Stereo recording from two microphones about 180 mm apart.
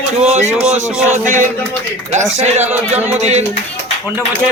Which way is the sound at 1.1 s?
45° right (ahead or behind).